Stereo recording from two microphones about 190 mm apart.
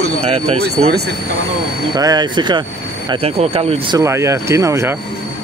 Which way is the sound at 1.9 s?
20° right (ahead or behind).